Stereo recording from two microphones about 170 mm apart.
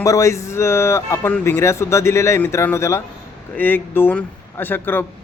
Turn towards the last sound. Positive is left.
turn(degrees=10)  # may be behind; listen again after turning